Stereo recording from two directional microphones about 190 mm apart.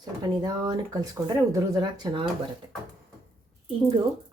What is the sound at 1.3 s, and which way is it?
Speech, 20° right (ahead or behind).